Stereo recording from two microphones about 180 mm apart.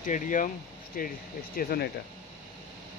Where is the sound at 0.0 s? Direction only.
45° left (ahead or behind).